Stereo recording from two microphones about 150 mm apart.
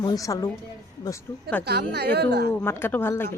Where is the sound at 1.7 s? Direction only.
90° right.